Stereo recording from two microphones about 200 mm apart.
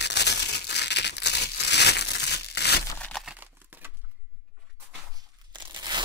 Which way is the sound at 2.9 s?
5° left (ahead or behind).